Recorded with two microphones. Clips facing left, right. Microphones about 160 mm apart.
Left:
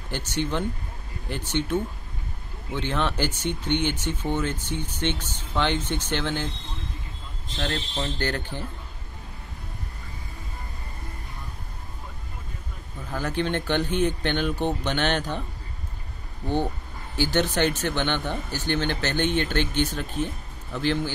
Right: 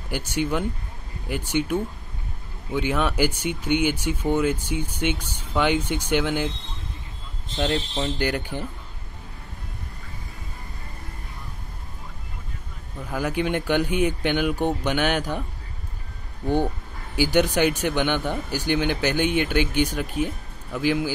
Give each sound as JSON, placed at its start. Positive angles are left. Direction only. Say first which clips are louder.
{"t": 0.1, "sound": "speech", "louder": "right 3 dB", "side_deg": -10}
{"t": 7.4, "sound": "speech", "louder": "right 5 dB", "side_deg": -25}
{"t": 7.9, "sound": "speech", "louder": "right 3 dB", "side_deg": -10}
{"t": 13.1, "sound": "speech", "louder": "right 2 dB", "side_deg": -10}
{"t": 17.2, "sound": "speech", "louder": "right 3 dB", "side_deg": -10}